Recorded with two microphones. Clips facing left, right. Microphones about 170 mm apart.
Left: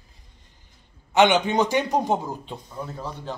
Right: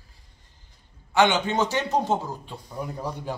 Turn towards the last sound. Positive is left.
turn(degrees=-15)  # may be behind; listen again after turning